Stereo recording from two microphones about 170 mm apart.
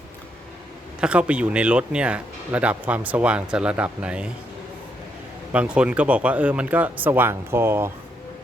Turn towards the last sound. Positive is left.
turn(degrees=-15)  # may be behind; listen again after turning